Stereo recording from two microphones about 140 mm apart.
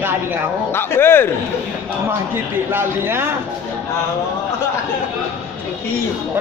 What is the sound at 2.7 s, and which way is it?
Speech, 15° right (ahead or behind).